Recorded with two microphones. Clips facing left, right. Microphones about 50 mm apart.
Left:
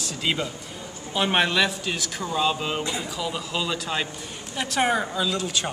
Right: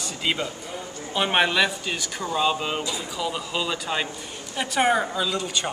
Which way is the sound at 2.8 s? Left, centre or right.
Left.